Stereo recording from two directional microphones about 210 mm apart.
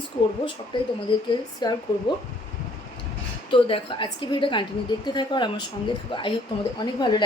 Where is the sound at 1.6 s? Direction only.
20° left (ahead or behind).